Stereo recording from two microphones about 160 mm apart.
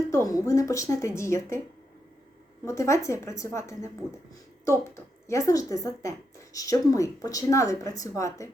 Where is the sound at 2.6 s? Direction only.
20° left (ahead or behind).